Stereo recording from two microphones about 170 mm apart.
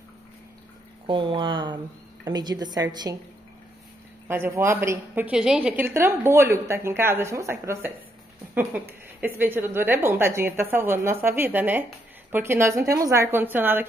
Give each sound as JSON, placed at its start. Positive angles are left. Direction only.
{"t": 1.0, "sound": "a woman's voice", "side_deg": -30}
{"t": 4.3, "sound": "a woman's voice", "side_deg": -15}
{"t": 9.2, "sound": "a woman's voice", "side_deg": -10}